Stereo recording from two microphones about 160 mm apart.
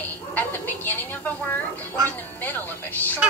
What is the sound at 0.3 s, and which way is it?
Speech, 10° left (ahead or behind).